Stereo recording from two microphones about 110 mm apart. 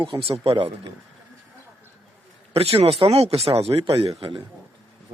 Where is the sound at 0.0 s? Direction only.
60° right (ahead or behind).